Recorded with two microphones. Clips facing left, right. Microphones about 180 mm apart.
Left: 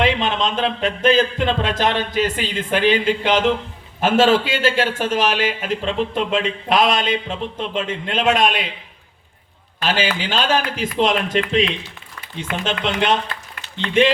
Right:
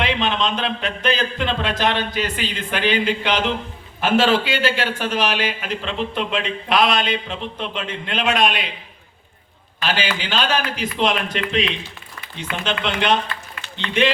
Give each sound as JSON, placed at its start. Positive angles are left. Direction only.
{"t": 0.0, "sound": "speech", "side_deg": 45}
{"t": 9.8, "sound": "speech", "side_deg": 45}